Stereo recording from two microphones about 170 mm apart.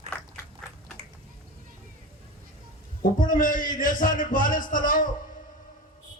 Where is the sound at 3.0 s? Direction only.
55° left (ahead or behind).